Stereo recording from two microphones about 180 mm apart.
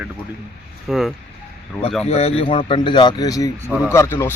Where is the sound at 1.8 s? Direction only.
15° left (ahead or behind).